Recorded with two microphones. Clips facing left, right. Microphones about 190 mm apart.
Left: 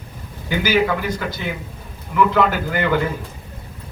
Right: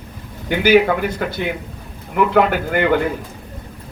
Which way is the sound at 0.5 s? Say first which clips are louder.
Right 5 dB; 60° right (ahead or behind).